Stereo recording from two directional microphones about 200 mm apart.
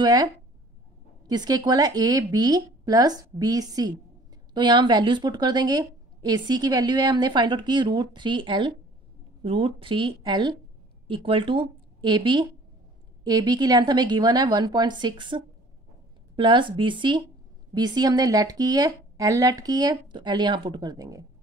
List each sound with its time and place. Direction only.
0.0 s a woman's voice: 20° right (ahead or behind)